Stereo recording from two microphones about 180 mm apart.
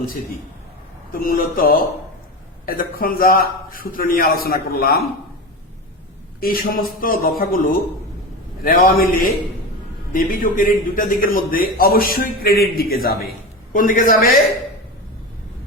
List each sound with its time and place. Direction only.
1.1 s a man's voice: 55° left (ahead or behind)
6.4 s a man's voice: 55° left (ahead or behind)